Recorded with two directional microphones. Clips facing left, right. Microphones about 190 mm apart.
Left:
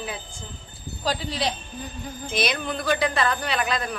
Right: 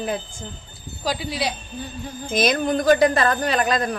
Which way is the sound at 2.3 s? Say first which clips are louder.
Right 7 dB; 45° right (ahead or behind).